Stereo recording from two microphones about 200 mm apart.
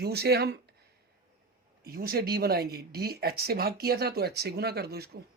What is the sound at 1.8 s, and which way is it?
Speech, 50° right (ahead or behind).